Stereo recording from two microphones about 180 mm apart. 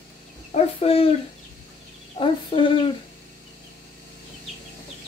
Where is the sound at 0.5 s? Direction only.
35° left (ahead or behind).